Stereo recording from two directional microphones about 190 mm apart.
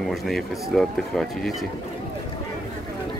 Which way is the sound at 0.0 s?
Centre (ahead or behind).